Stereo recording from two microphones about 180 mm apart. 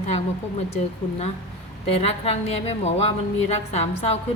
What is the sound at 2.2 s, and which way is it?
A woman's voice, 35° left (ahead or behind).